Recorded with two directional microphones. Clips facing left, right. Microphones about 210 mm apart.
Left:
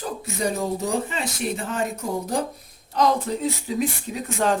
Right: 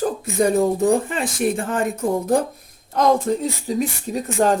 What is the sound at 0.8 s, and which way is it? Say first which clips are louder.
A woman's voice: right 7 dB; 50° right (ahead or behind).